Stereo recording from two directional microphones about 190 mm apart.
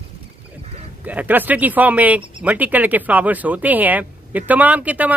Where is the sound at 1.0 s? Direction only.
10° right (ahead or behind).